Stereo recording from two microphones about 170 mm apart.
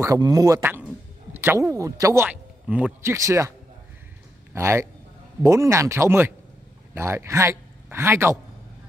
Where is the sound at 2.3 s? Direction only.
5° right (ahead or behind).